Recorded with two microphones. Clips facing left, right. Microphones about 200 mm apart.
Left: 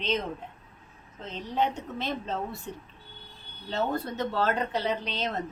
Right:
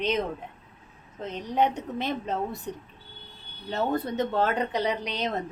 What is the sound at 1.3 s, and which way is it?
Speech, 15° right (ahead or behind).